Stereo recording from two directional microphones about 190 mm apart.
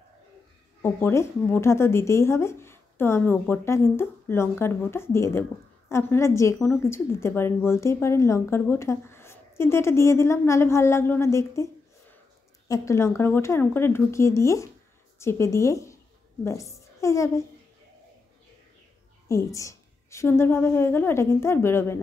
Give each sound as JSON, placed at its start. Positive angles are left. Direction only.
{"t": 0.8, "sound": "a woman's voice", "side_deg": 15}
{"t": 19.2, "sound": "a woman's voice", "side_deg": 15}